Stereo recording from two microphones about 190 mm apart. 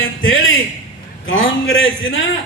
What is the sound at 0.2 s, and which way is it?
Music, 90° left.